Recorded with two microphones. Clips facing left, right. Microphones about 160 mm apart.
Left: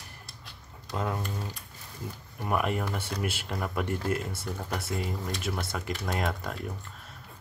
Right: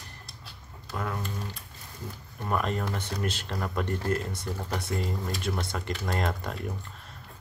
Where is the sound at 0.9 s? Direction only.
20° left (ahead or behind).